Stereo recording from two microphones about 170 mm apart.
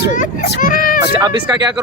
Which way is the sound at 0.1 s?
50° left (ahead or behind).